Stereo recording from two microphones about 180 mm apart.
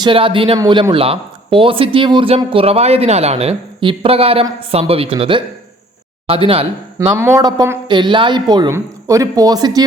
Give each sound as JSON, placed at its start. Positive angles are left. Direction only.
{"t": 0.0, "sound": "speech", "side_deg": -30}
{"t": 7.2, "sound": "speech", "side_deg": -15}